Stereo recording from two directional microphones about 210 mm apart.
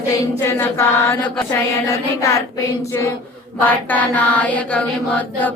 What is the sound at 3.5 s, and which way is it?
Chant, 5° left (ahead or behind).